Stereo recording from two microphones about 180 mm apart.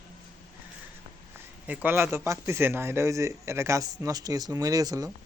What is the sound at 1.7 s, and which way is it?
Speech, 10° right (ahead or behind).